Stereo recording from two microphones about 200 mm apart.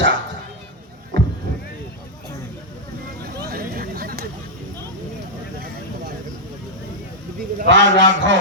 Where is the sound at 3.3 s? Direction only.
50° right (ahead or behind).